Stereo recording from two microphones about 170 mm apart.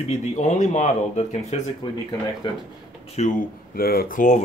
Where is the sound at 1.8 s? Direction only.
25° left (ahead or behind).